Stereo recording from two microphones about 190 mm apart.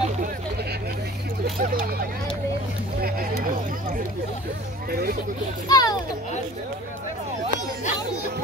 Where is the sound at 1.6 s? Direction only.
50° right (ahead or behind).